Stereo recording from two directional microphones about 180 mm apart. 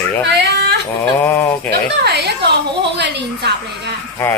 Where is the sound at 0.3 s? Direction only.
70° right (ahead or behind).